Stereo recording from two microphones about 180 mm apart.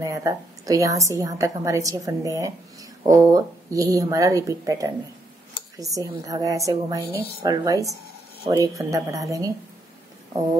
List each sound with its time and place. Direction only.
0.0 s a woman's voice: 20° right (ahead or behind)